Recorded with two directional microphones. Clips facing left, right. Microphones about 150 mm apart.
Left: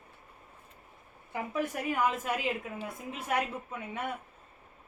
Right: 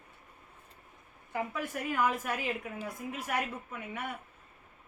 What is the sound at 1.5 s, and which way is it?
Speech, 20° left (ahead or behind).